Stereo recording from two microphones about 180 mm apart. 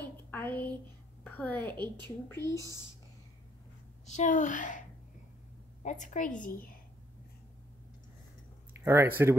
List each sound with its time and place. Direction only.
0.0 s a sound: 10° left (ahead or behind)
1.2 s a woman's voice: 10° left (ahead or behind)
4.0 s a woman's voice: 40° left (ahead or behind)
8.7 s speech: 15° right (ahead or behind)